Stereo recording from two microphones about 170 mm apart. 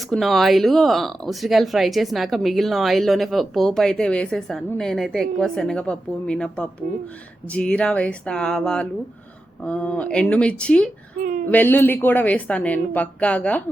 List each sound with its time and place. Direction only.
0.1 s speech: centre (ahead or behind)
11.2 s speech: 55° right (ahead or behind)
11.5 s speech: 10° left (ahead or behind)